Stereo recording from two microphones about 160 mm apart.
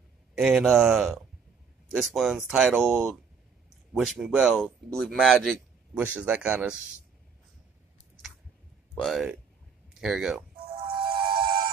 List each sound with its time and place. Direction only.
0.4 s speech: 5° right (ahead or behind)
5.9 s speech: 10° right (ahead or behind)
8.9 s speech: centre (ahead or behind)
10.7 s music: 75° right (ahead or behind)
11.1 s music: 30° right (ahead or behind)